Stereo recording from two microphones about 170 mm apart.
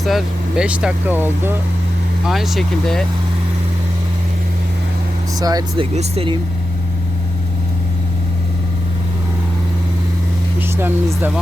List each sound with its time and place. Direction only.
0.0 s speech: centre (ahead or behind)
5.4 s speech: 20° right (ahead or behind)
5.8 s speech: 35° right (ahead or behind)
10.8 s speech: 15° right (ahead or behind)